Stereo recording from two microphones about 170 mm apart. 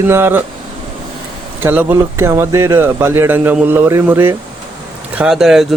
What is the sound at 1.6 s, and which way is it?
Speech, 10° right (ahead or behind).